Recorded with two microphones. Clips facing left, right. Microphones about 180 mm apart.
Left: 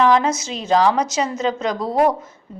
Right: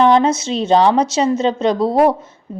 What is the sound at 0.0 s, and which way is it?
A woman's voice, 30° right (ahead or behind).